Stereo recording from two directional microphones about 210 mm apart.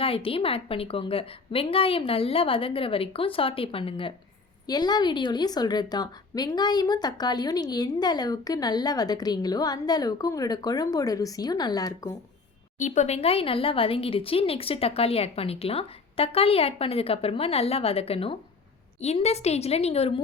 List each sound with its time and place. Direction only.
0.0 s a woman's voice: 25° left (ahead or behind)
12.8 s a woman's voice: 35° left (ahead or behind)